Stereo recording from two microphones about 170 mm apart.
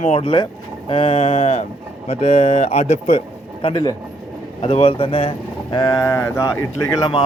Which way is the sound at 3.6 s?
25° left (ahead or behind).